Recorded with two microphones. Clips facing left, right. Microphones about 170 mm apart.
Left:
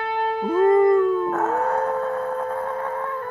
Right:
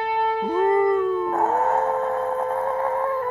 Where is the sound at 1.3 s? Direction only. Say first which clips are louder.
Right 1 dB; 20° right (ahead or behind).